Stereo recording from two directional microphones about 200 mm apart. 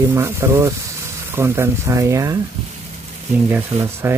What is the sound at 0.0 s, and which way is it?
Speech, 15° right (ahead or behind).